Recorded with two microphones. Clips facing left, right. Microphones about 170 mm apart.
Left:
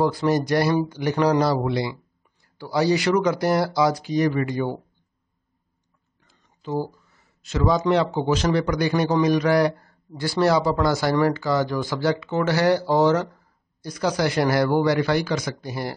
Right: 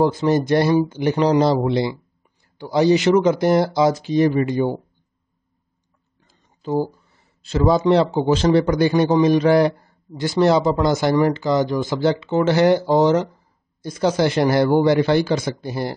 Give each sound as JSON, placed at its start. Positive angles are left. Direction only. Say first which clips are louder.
{"t": 0.0, "sound": "speech", "louder": "right 3 dB", "side_deg": -20}
{"t": 6.2, "sound": "speech", "louder": "right 5 dB", "side_deg": -35}